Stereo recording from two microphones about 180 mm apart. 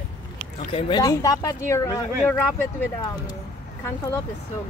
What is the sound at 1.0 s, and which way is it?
Speech, 20° left (ahead or behind).